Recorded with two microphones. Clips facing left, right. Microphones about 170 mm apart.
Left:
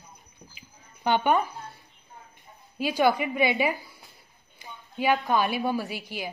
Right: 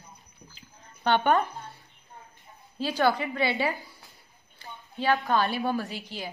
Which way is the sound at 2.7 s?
10° left (ahead or behind).